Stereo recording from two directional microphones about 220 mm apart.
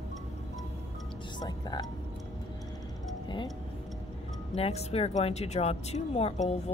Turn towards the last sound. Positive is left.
turn(degrees=30)  # may be behind; listen again after turning